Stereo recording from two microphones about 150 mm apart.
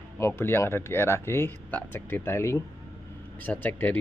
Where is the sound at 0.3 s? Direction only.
15° left (ahead or behind).